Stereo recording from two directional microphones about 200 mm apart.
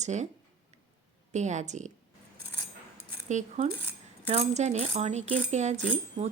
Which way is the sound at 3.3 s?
35° right (ahead or behind).